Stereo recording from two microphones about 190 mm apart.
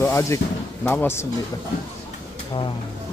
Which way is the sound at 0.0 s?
15° left (ahead or behind).